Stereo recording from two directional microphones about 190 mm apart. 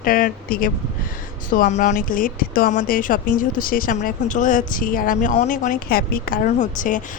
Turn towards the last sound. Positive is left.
turn(degrees=45)  # may be behind; listen again after turning